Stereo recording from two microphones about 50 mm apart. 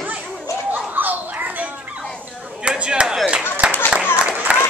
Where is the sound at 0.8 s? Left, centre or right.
Right.